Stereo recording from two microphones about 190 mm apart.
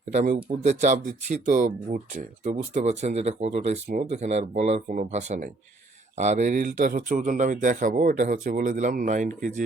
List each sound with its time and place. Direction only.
0.1 s speech: 35° right (ahead or behind)